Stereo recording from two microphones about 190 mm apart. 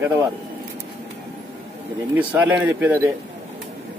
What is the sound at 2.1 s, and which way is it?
Speech, 5° right (ahead or behind).